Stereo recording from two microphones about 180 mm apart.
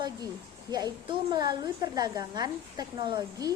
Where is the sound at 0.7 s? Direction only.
20° right (ahead or behind).